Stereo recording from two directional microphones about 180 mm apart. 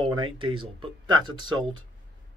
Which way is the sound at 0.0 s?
25° right (ahead or behind).